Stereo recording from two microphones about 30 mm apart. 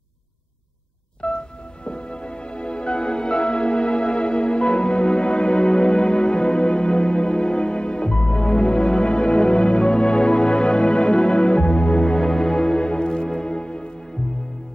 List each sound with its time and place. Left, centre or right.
1.2 s music: left
12.2 s music: centre
12.8 s music: left